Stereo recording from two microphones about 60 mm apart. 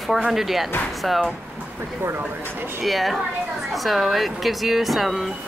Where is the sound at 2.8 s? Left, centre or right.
Centre.